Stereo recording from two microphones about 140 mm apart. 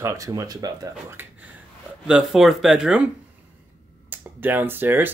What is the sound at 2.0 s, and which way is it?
Speech, 5° right (ahead or behind).